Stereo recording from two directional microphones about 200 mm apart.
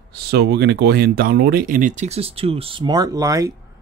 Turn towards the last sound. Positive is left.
turn(degrees=-15)  # may be behind; listen again after turning